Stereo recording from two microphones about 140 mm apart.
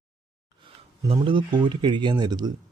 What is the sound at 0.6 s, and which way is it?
Speech, 40° right (ahead or behind).